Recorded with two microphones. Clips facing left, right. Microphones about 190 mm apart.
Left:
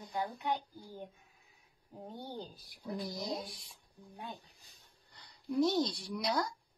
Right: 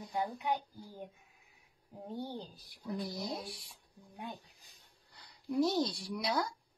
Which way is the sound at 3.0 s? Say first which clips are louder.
Left 1 dB; centre (ahead or behind).